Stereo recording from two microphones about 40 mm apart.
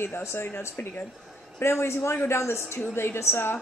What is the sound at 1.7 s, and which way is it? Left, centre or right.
Speech, left.